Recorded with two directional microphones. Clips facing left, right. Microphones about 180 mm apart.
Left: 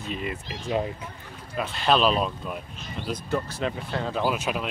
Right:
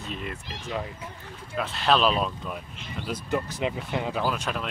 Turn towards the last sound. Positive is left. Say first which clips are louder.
# left 2 dB
turn(degrees=5)  # may be behind; listen again after turning